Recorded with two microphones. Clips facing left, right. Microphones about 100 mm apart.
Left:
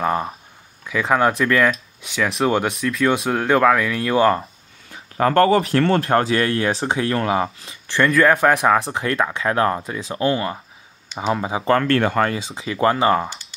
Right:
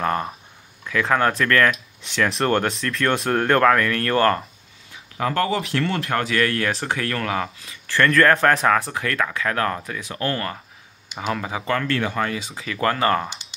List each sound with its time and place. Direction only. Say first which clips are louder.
0.0 s speech: left 2 dB; 10° left (ahead or behind)
4.9 s speech: left 7 dB; 45° left (ahead or behind); by 8.1 s 20° left (ahead or behind)
8.1 s speech: left 1 dB; 10° left (ahead or behind)
8.7 s speech: left 3 dB; 25° left (ahead or behind)
11.8 s speech: left 5 dB; 50° left (ahead or behind)
12.4 s speech: left 4 dB; 25° left (ahead or behind)